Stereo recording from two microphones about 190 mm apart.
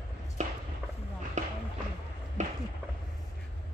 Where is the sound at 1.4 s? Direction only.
40° right (ahead or behind).